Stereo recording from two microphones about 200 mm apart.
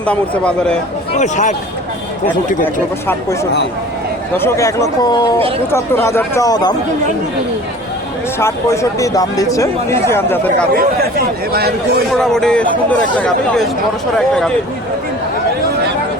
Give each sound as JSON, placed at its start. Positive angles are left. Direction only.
{"t": 0.0, "sound": "speech", "side_deg": 5}
{"t": 1.1, "sound": "a man's voice", "side_deg": 35}
{"t": 4.4, "sound": "speech", "side_deg": 15}
{"t": 8.4, "sound": "speech", "side_deg": 15}
{"t": 10.8, "sound": "speech", "side_deg": -50}
{"t": 12.1, "sound": "speech", "side_deg": 0}